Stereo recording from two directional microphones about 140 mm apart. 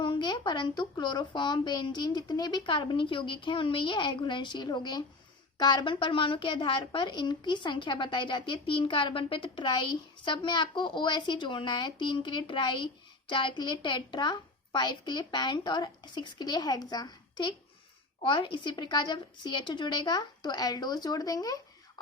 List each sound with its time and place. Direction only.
0.0 s a woman's voice: 35° left (ahead or behind)